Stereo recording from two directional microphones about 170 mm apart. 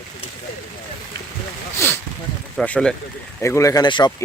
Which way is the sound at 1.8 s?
15° left (ahead or behind).